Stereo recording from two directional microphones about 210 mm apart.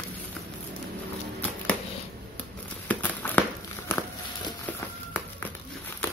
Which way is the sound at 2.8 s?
10° left (ahead or behind).